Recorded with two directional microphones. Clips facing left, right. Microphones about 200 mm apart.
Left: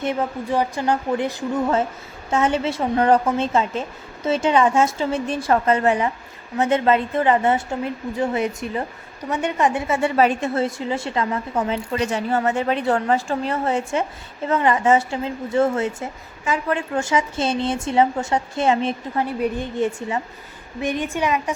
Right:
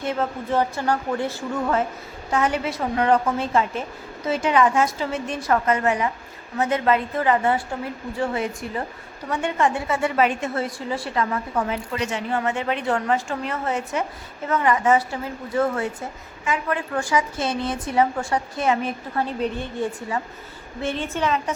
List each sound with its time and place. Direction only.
0.0 s a woman's voice: 15° left (ahead or behind); by 3.3 s 35° left (ahead or behind)
3.3 s a woman's voice: 25° left (ahead or behind)
10.2 s a woman's voice: 35° left (ahead or behind)
19.2 s a woman's voice: 15° left (ahead or behind)